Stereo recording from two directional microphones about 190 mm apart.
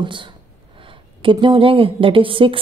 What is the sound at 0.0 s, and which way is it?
A woman's voice, 25° right (ahead or behind).